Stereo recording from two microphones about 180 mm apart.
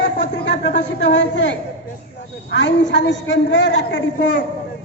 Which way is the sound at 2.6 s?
80° left.